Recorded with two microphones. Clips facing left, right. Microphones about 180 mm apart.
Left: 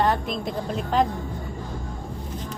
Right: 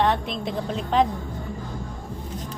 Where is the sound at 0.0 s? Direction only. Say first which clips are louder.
Even; centre (ahead or behind).